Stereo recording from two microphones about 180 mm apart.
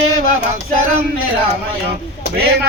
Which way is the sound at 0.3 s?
45° right (ahead or behind).